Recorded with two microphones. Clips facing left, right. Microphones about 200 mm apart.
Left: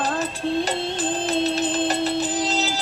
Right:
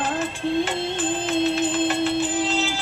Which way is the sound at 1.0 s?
40° left (ahead or behind).